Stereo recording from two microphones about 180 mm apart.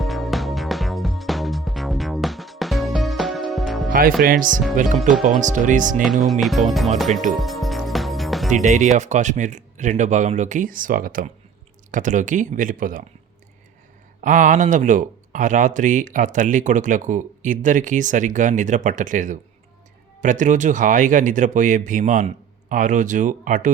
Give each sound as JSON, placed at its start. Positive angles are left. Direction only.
{"t": 0.0, "sound": "music", "side_deg": 0}
{"t": 4.2, "sound": "speech", "side_deg": -50}
{"t": 6.4, "sound": "speech", "side_deg": 0}
{"t": 7.3, "sound": "music", "side_deg": 0}
{"t": 8.4, "sound": "speech", "side_deg": -45}
{"t": 14.2, "sound": "speech", "side_deg": -45}